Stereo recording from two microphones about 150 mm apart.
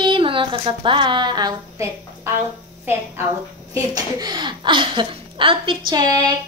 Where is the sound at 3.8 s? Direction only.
25° right (ahead or behind).